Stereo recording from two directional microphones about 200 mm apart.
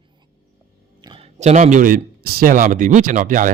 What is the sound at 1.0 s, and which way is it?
Speech, 25° right (ahead or behind).